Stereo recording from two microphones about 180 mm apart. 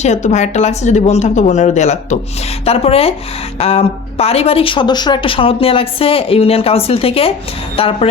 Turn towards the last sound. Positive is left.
turn(degrees=30)  # may be behind; listen again after turning